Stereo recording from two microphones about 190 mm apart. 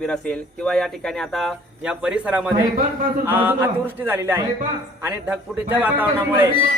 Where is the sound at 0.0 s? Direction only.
5° left (ahead or behind).